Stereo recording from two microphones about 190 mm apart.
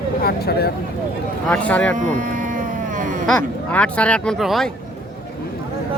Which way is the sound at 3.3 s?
5° left (ahead or behind).